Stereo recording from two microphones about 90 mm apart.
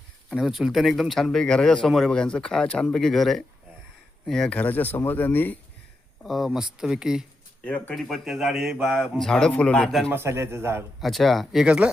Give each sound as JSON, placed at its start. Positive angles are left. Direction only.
{"t": 0.3, "sound": "a man's voice", "side_deg": -5}
{"t": 6.2, "sound": "speech", "side_deg": -5}
{"t": 7.6, "sound": "a man's voice", "side_deg": 15}
{"t": 7.9, "sound": "a man's voice", "side_deg": 0}
{"t": 9.3, "sound": "a man's voice", "side_deg": 10}
{"t": 10.1, "sound": "speech", "side_deg": -25}
{"t": 11.0, "sound": "a man's voice", "side_deg": 0}